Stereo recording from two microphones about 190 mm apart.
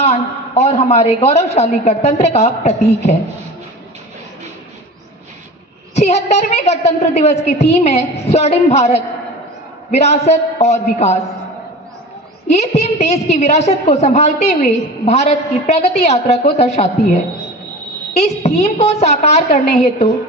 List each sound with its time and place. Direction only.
0.0 s a man's voice: 35° left (ahead or behind)
5.9 s a woman's voice: 35° left (ahead or behind)
12.5 s a woman's voice: 35° left (ahead or behind)
18.1 s a woman's voice: 35° left (ahead or behind)